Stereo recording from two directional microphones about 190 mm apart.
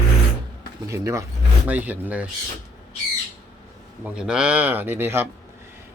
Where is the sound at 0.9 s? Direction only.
15° right (ahead or behind).